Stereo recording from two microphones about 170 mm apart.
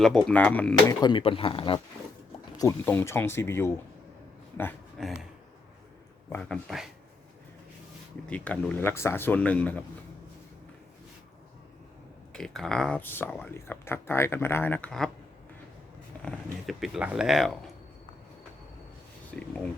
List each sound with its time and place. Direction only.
0.0 s speech: 5° left (ahead or behind)
0.9 s speech: 25° left (ahead or behind)
2.6 s speech: 15° left (ahead or behind)
4.9 s a sound: centre (ahead or behind)
6.3 s speech: 5° left (ahead or behind)
8.3 s speech: 10° left (ahead or behind)
12.3 s speech: 5° left (ahead or behind)
16.2 s speech: centre (ahead or behind)
19.3 s speech: 5° left (ahead or behind)